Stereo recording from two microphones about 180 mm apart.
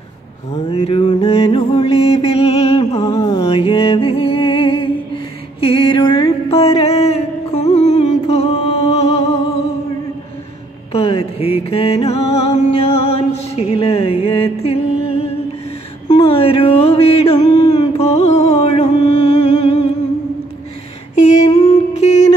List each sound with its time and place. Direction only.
0.5 s mantra: 35° left (ahead or behind)
3.4 s music: 30° left (ahead or behind)
10.9 s mantra: 35° left (ahead or behind)
11.7 s music: 35° left (ahead or behind)
16.1 s a sound: 35° left (ahead or behind)
17.4 s a sound: 20° left (ahead or behind)
17.9 s music: 35° left (ahead or behind)
21.9 s music: 40° left (ahead or behind)